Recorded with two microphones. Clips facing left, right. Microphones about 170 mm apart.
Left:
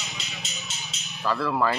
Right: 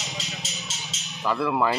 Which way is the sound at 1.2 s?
15° right (ahead or behind).